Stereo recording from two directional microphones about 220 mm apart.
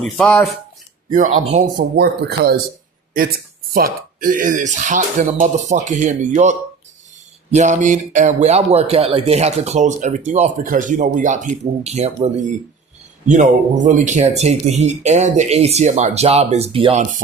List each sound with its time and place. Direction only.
0.0 s speech: 5° left (ahead or behind)
1.1 s speech: 35° right (ahead or behind)
2.0 s speech: 45° right (ahead or behind)
3.8 s speech: 40° right (ahead or behind)